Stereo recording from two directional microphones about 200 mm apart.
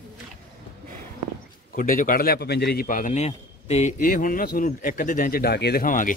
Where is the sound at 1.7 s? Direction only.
45° left (ahead or behind).